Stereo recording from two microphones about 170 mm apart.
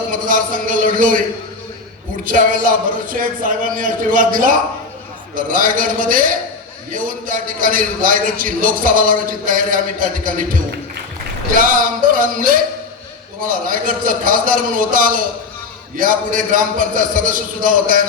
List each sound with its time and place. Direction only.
0.1 s a man's voice: 50° right (ahead or behind)
2.2 s a man's voice: 55° right (ahead or behind)